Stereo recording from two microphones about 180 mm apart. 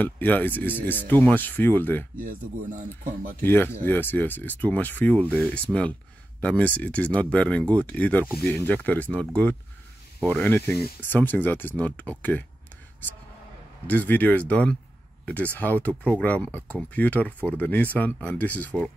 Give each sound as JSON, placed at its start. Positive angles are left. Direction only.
{"t": 0.0, "sound": "speech", "side_deg": 10}
{"t": 2.7, "sound": "speech", "side_deg": -45}
{"t": 3.4, "sound": "speech", "side_deg": 10}
{"t": 13.8, "sound": "speech", "side_deg": 10}